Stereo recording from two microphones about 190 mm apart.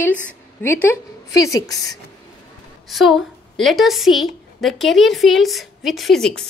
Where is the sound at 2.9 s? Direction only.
Centre (ahead or behind).